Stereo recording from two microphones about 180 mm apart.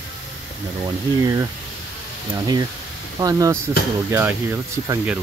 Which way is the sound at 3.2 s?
20° right (ahead or behind).